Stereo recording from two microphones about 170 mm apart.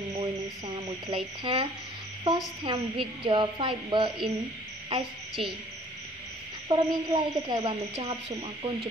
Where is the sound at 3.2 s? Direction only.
25° right (ahead or behind).